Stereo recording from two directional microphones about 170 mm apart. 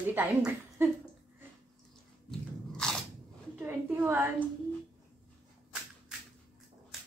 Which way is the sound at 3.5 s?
10° right (ahead or behind).